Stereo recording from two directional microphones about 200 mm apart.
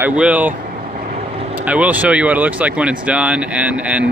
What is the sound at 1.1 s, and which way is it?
Vehicle, 30° right (ahead or behind).